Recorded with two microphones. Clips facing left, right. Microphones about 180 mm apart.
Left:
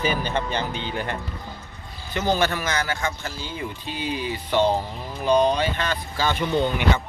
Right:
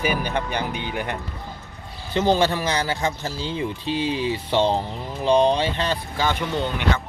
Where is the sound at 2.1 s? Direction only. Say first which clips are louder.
Right 3 dB; 25° right (ahead or behind).